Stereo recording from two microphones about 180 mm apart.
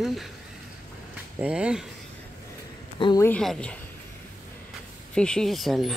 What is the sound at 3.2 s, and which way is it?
Speech, 5° left (ahead or behind).